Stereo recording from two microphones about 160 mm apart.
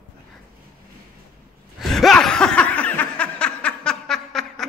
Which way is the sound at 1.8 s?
Centre (ahead or behind).